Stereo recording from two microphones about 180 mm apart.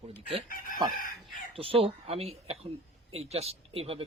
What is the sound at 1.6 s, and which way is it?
Speech, 30° right (ahead or behind).